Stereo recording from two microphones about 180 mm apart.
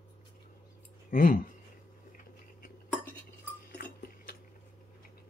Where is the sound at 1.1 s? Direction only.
45° left (ahead or behind).